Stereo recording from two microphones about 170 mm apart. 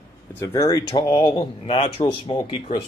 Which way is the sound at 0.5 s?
25° left (ahead or behind).